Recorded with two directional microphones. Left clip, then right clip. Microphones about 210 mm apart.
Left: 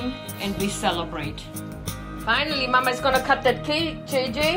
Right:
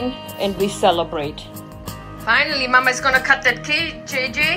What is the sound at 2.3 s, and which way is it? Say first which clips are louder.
A woman's voice: right 6 dB; 20° right (ahead or behind).